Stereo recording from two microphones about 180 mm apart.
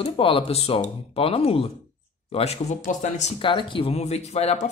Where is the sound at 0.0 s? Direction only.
30° left (ahead or behind).